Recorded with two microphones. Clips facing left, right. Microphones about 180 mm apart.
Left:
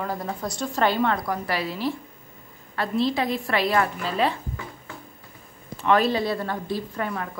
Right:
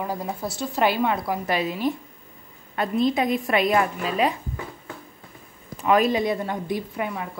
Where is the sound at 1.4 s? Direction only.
20° right (ahead or behind).